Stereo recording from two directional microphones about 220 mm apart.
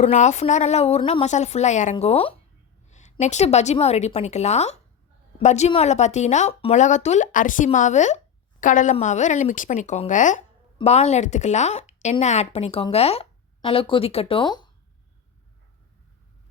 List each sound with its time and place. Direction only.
0.0 s speech: 30° left (ahead or behind)